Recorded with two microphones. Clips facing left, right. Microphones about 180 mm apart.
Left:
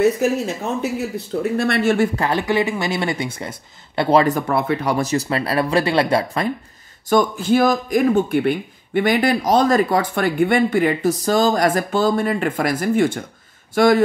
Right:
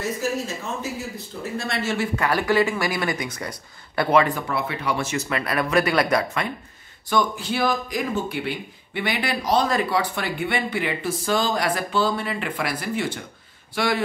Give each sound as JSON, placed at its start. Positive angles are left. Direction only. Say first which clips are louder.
{"t": 0.2, "sound": "speech", "louder": "left 7 dB", "side_deg": 60}
{"t": 2.1, "sound": "speech", "louder": "left 1 dB", "side_deg": 25}
{"t": 4.2, "sound": "speech", "louder": "left 5 dB", "side_deg": 45}
{"t": 7.1, "sound": "speech", "louder": "left 7 dB", "side_deg": 45}